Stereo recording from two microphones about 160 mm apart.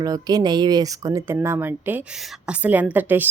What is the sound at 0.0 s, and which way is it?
A woman's voice, 25° right (ahead or behind).